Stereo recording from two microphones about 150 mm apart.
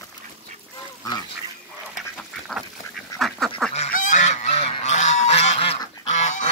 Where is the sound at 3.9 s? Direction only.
55° left (ahead or behind).